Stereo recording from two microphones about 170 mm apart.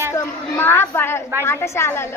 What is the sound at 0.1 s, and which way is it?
A woman's voice, 15° left (ahead or behind).